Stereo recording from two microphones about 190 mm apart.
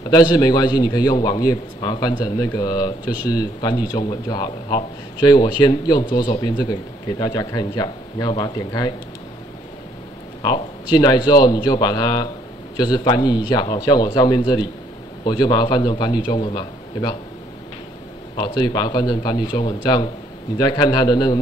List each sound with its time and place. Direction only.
0.0 s a man's voice: 20° left (ahead or behind)
10.4 s a man's voice: 20° left (ahead or behind)
18.3 s a man's voice: 25° left (ahead or behind)